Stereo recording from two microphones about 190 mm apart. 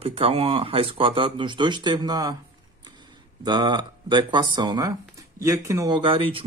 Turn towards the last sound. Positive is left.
turn(degrees=-30)  # may be behind; listen again after turning